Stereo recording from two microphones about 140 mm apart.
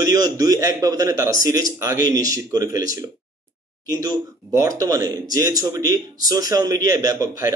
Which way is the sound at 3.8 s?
25° right (ahead or behind).